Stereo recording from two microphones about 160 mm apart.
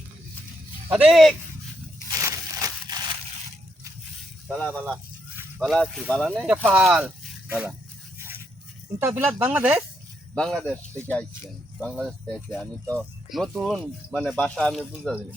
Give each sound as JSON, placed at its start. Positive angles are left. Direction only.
{"t": 0.9, "sound": "speech", "side_deg": -5}
{"t": 2.0, "sound": "a sound", "side_deg": -20}
{"t": 4.7, "sound": "speech", "side_deg": -5}
{"t": 7.0, "sound": "a sound", "side_deg": -10}
{"t": 9.0, "sound": "speech", "side_deg": -10}
{"t": 10.3, "sound": "speech", "side_deg": 5}